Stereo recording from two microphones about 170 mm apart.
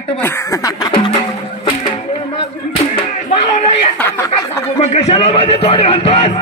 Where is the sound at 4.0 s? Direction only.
15° left (ahead or behind).